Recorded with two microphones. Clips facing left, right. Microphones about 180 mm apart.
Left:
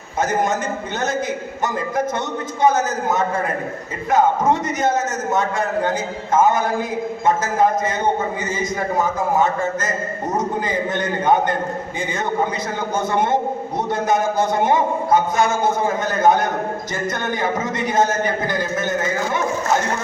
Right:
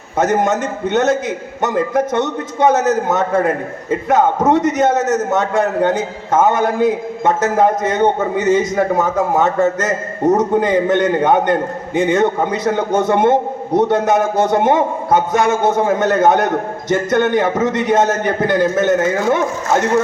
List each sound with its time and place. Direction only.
0.2 s a man's voice: 70° right (ahead or behind)